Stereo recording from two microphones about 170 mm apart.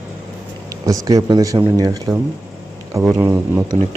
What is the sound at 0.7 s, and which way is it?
Speech, 20° right (ahead or behind).